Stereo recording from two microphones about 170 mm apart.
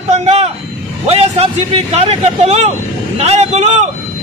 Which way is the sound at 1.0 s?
35° right (ahead or behind).